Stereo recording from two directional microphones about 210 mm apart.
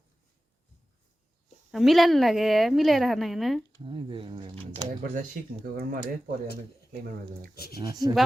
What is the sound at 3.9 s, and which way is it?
Speech, 25° right (ahead or behind).